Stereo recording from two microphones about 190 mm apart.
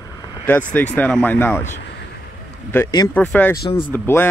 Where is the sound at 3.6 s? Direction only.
25° left (ahead or behind).